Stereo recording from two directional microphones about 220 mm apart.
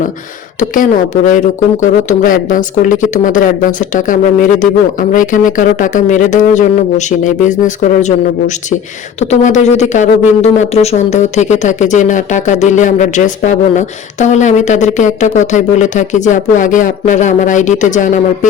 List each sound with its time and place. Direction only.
0.7 s speech: 35° left (ahead or behind)